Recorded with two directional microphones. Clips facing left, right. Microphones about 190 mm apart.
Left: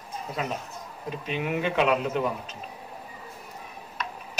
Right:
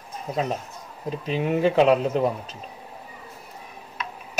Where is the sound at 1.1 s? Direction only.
35° right (ahead or behind).